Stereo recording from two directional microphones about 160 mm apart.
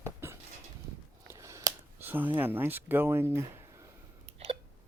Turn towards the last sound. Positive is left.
turn(degrees=-40)  # may be behind; listen again after turning